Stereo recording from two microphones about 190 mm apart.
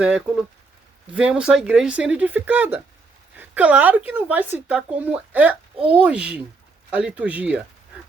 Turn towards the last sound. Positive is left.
turn(degrees=-5)  # may be behind; listen again after turning